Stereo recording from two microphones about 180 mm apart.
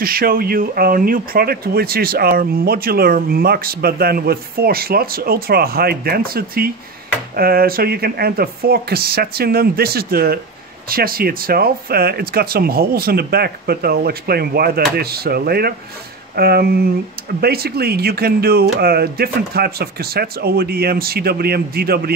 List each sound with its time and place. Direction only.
0.0 s speech: 55° right (ahead or behind)